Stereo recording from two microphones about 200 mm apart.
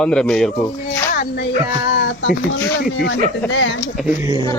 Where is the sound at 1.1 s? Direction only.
50° left (ahead or behind).